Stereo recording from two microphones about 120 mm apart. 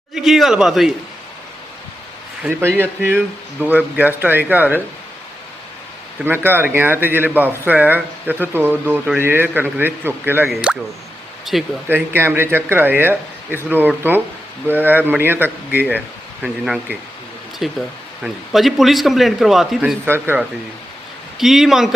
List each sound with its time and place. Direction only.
0.1 s a man's voice: centre (ahead or behind)
2.5 s speech: 20° right (ahead or behind)
6.2 s speech: 15° right (ahead or behind)
10.5 s a man's voice: 5° right (ahead or behind)
11.9 s a man's voice: 20° right (ahead or behind); by 20.0 s 5° right (ahead or behind)
20.1 s speech: 20° right (ahead or behind)
21.3 s a man's voice: 5° right (ahead or behind)